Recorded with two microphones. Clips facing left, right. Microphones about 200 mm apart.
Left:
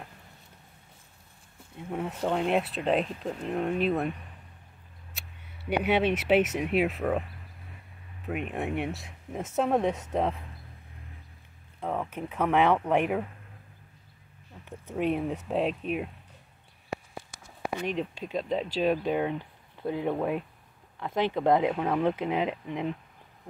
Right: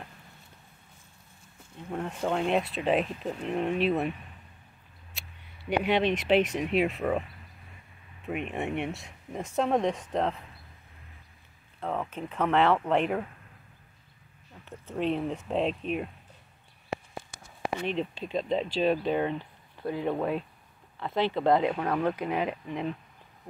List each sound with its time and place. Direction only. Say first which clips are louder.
1.8 s speech: left 1 dB; 5° left (ahead or behind)
5.7 s speech: even; 5° left (ahead or behind)
8.3 s speech: even; centre (ahead or behind)
11.8 s speech: left 1 dB; 10° left (ahead or behind)
14.9 s speech: left 1 dB; 10° left (ahead or behind)
17.8 s speech: even; 10° left (ahead or behind)
22.0 s speech: left 1 dB; 20° left (ahead or behind)